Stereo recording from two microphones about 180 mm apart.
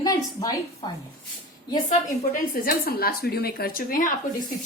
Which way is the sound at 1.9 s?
50° left (ahead or behind).